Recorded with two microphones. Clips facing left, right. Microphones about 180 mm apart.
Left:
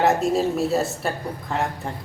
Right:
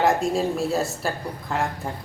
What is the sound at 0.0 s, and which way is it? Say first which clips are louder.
Speech: left 2 dB; centre (ahead or behind).